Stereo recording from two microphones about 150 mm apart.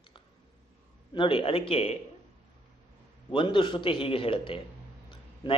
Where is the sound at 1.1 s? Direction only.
35° left (ahead or behind).